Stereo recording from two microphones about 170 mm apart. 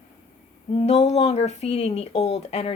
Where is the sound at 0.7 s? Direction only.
40° left (ahead or behind).